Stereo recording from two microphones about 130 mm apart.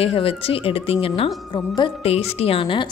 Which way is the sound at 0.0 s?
50° left (ahead or behind).